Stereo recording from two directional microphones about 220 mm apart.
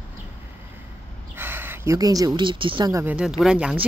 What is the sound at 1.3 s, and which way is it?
A woman's voice, 10° right (ahead or behind).